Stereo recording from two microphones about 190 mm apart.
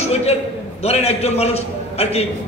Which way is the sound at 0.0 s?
35° left (ahead or behind).